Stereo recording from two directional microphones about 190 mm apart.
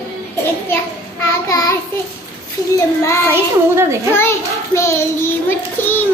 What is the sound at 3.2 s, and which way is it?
Speech, 15° right (ahead or behind).